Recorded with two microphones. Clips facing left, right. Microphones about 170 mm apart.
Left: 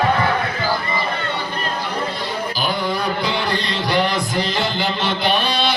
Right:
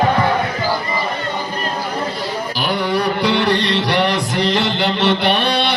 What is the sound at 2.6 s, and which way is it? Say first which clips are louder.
Music: right 4 dB; 70° right (ahead or behind).